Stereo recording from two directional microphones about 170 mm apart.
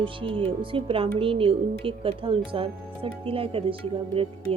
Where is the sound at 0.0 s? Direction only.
30° right (ahead or behind).